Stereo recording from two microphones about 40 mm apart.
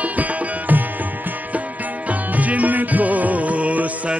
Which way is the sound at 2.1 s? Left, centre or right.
Right.